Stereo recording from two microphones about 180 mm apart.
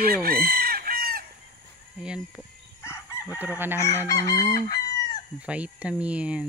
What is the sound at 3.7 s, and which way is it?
Chicken, 15° left (ahead or behind).